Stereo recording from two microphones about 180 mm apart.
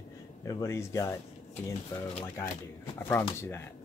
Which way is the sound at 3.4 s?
15° left (ahead or behind).